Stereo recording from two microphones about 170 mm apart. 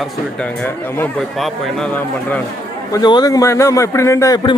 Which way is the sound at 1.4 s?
Centre (ahead or behind).